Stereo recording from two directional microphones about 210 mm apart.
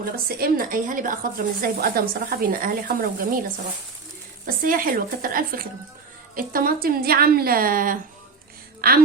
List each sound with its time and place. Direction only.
0.0 s a woman's voice: 45° right (ahead or behind)
4.4 s a woman's voice: 40° right (ahead or behind)